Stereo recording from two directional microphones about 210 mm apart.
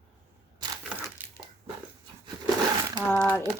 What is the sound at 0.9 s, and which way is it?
Crumpling, 5° right (ahead or behind).